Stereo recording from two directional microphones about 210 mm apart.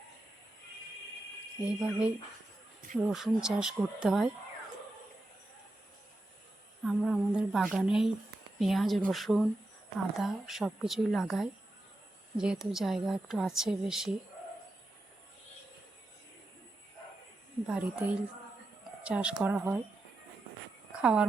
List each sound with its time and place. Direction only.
1.6 s speech: 5° right (ahead or behind)
6.8 s speech: centre (ahead or behind)
17.7 s speech: 5° right (ahead or behind)
21.0 s speech: 5° right (ahead or behind)